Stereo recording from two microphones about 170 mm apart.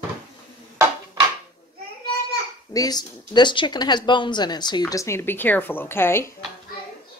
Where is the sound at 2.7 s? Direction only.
25° left (ahead or behind).